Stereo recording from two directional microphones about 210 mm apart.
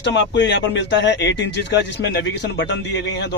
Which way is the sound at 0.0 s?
55° left (ahead or behind).